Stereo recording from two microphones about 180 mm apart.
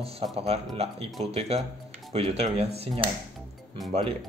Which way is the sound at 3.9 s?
35° right (ahead or behind).